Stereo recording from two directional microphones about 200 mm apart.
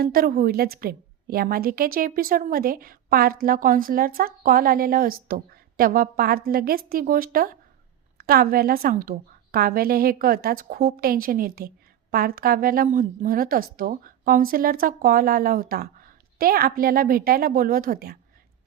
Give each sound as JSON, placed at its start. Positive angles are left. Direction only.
{"t": 0.0, "sound": "a woman's voice", "side_deg": -45}